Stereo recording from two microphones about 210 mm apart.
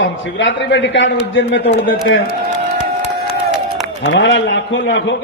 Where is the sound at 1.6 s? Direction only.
45° left (ahead or behind).